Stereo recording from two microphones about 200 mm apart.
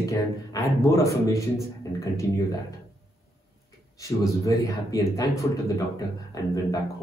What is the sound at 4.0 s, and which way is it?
A man's voice, 15° left (ahead or behind).